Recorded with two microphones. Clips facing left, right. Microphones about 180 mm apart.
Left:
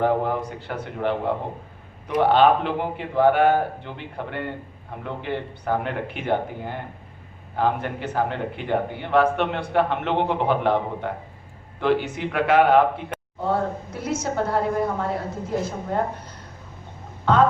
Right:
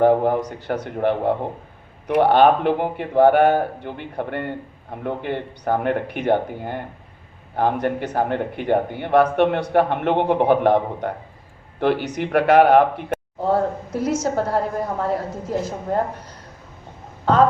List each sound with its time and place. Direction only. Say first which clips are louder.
0.0 s a man's voice: right 6 dB; 45° right (ahead or behind)
2.0 s a man's voice: right 3 dB; 60° right (ahead or behind)
2.4 s a man's voice: right 3 dB; 45° right (ahead or behind)
17.3 s speech: right 2 dB; 40° right (ahead or behind)